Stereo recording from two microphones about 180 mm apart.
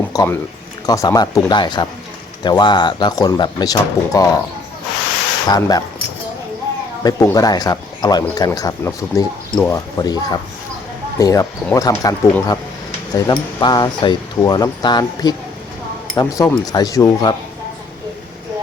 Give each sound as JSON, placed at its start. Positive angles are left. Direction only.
{"t": 0.1, "sound": "a sound", "side_deg": 20}
{"t": 0.9, "sound": "speech", "side_deg": 20}
{"t": 5.5, "sound": "speech", "side_deg": 20}
{"t": 7.0, "sound": "speech", "side_deg": 20}